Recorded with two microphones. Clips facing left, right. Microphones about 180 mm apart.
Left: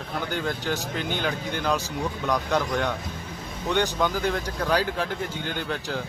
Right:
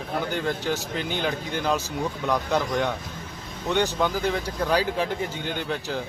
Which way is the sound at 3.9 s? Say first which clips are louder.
Even; 5° right (ahead or behind).